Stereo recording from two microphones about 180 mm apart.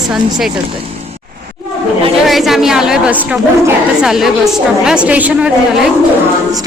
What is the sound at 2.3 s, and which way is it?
A woman's voice, centre (ahead or behind).